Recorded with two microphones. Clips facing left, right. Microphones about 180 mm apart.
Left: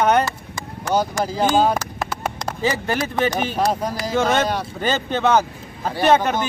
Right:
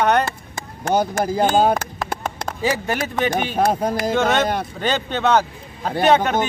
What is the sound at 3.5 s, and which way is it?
Speech, 55° right (ahead or behind).